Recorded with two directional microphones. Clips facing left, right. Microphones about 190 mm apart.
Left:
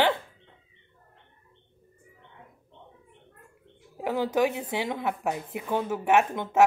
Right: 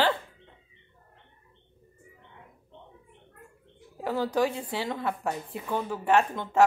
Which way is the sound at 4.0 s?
20° left (ahead or behind).